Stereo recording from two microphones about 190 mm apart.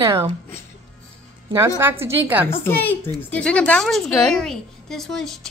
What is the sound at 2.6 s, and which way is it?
Speech, 10° left (ahead or behind).